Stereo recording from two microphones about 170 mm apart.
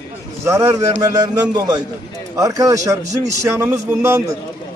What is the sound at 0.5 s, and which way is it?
A man's voice, 15° right (ahead or behind).